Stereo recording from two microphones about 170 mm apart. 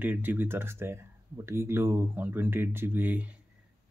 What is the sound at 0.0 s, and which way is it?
Speech, 10° right (ahead or behind).